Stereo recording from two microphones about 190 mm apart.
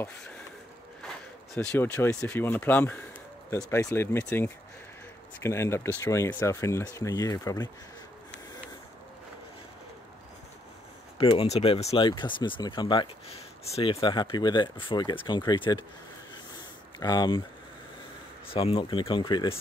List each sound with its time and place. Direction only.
1.5 s speech: 10° left (ahead or behind)
11.1 s speech: 30° left (ahead or behind)
17.0 s speech: 20° left (ahead or behind)
18.5 s speech: 30° left (ahead or behind)